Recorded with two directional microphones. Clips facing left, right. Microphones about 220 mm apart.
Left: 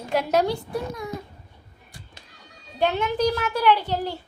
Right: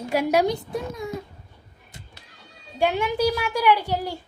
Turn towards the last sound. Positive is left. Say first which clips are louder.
# even
turn(degrees=-10)  # may be behind; listen again after turning